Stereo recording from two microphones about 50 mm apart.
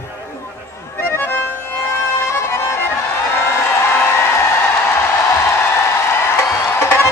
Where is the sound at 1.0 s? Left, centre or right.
Left.